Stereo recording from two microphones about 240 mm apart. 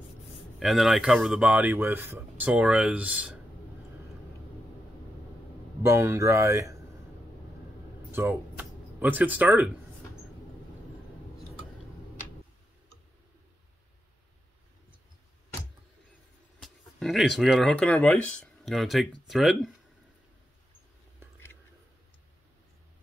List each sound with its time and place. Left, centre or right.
0.6 s speech: centre
5.8 s speech: centre
8.1 s a sound: centre
16.6 s speech: centre